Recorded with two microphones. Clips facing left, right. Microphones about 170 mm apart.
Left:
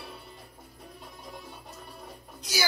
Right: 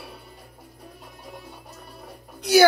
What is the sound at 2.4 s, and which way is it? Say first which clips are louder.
Speech: right 17 dB; 60° right (ahead or behind).